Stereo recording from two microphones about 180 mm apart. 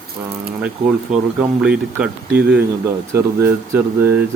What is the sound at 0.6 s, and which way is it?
Speech, 5° right (ahead or behind).